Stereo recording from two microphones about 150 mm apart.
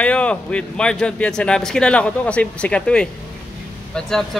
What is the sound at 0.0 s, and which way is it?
Speech, 10° left (ahead or behind).